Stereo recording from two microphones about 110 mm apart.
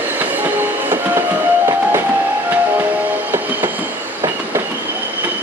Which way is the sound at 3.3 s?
20° right (ahead or behind).